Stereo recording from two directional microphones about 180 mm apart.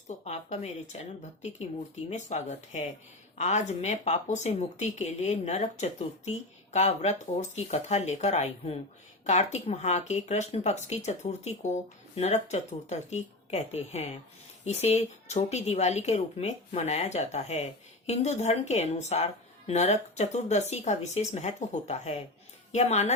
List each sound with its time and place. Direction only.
0.3 s speech: 40° left (ahead or behind)